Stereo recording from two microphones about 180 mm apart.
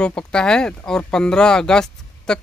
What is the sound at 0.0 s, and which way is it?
Speech, 5° left (ahead or behind).